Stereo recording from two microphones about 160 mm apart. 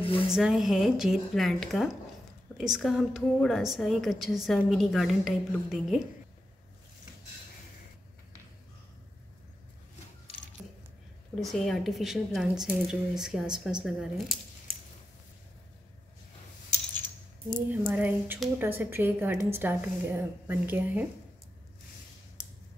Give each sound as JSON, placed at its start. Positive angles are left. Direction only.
{"t": 0.0, "sound": "speech", "side_deg": 35}
{"t": 0.3, "sound": "a woman's voice", "side_deg": 0}
{"t": 10.6, "sound": "keys jangling", "side_deg": -5}
{"t": 11.3, "sound": "a woman's voice", "side_deg": 0}
{"t": 17.6, "sound": "a woman's voice", "side_deg": -10}